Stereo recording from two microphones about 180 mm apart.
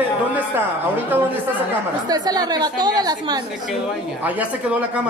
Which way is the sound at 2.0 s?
20° right (ahead or behind).